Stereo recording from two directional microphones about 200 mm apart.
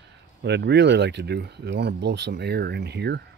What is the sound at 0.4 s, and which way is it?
Speech, 60° right (ahead or behind).